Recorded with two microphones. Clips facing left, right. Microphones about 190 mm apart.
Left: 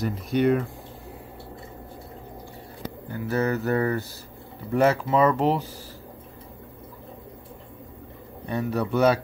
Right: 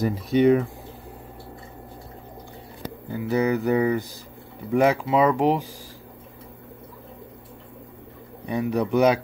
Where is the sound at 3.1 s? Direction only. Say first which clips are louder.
Right 3 dB; 15° right (ahead or behind).